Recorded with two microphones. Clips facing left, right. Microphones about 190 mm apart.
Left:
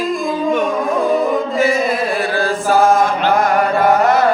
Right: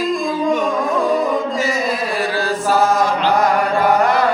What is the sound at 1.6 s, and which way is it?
Chant, 55° left (ahead or behind).